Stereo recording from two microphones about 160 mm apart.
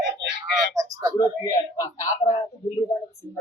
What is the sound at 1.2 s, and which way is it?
A man's voice, 20° left (ahead or behind).